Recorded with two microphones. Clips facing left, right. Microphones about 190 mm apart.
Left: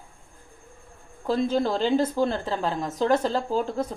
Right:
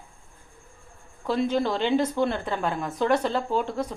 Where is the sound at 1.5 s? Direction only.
35° left (ahead or behind).